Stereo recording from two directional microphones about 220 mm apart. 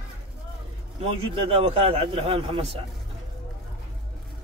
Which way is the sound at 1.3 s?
25° right (ahead or behind).